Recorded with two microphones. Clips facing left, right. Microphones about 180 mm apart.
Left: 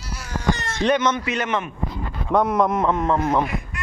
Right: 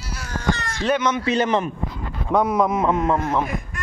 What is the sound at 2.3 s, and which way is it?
Speech, centre (ahead or behind).